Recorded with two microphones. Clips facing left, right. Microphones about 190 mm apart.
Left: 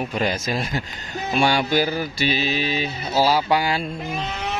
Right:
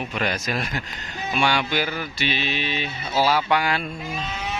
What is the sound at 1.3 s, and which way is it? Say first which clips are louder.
Mantra: left 4 dB; 35° left (ahead or behind).